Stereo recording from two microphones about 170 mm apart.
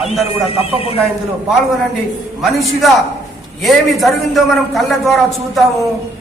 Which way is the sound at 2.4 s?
Centre (ahead or behind).